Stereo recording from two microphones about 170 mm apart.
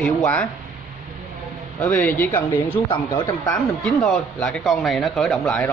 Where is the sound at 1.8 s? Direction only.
10° left (ahead or behind).